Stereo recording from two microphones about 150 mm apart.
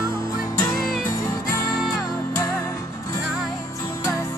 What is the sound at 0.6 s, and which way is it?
Music, 20° left (ahead or behind).